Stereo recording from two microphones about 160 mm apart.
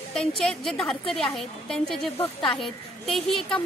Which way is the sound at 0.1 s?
5° left (ahead or behind).